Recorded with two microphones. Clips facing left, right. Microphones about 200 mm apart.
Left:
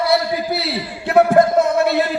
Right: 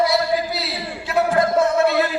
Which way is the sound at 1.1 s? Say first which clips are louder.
Left 7 dB; 60° left (ahead or behind).